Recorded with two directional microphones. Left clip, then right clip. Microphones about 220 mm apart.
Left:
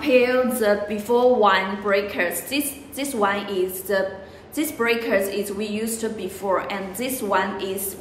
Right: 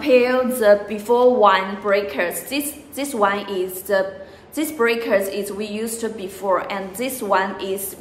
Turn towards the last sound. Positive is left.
turn(degrees=-15)  # may be behind; listen again after turning